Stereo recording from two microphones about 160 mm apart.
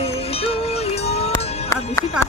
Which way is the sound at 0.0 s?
40° left (ahead or behind).